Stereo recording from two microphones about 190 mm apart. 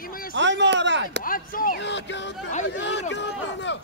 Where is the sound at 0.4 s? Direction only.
70° right (ahead or behind).